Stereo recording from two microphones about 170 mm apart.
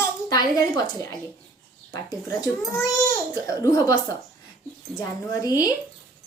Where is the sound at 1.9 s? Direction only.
20° left (ahead or behind).